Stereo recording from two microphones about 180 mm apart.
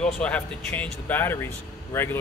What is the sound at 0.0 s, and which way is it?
Speech, 5° left (ahead or behind).